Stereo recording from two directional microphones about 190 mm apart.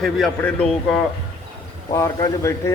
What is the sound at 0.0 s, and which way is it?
Speech, 5° left (ahead or behind).